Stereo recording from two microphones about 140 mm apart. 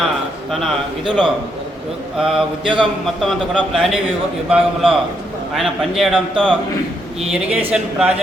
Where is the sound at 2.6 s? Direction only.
35° right (ahead or behind).